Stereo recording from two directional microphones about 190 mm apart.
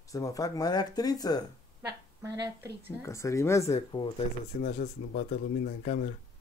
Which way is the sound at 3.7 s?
30° left (ahead or behind).